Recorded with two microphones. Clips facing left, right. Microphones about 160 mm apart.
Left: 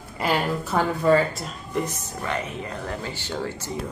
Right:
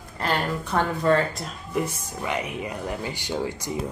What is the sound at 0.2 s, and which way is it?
Speech, 5° left (ahead or behind).